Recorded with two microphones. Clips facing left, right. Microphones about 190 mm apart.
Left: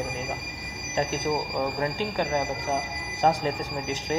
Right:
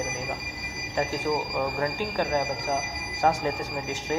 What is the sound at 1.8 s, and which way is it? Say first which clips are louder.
Speech: even; 20° left (ahead or behind).